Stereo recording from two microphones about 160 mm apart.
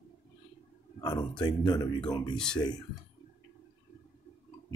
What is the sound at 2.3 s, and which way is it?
Speech, 5° left (ahead or behind).